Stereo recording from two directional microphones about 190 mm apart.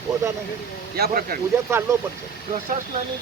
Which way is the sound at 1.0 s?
55° right (ahead or behind).